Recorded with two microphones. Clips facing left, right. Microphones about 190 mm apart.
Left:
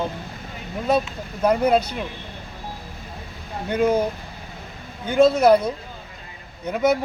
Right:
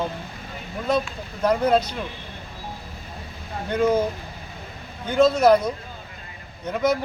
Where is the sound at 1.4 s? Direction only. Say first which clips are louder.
Left 1 dB; 10° left (ahead or behind).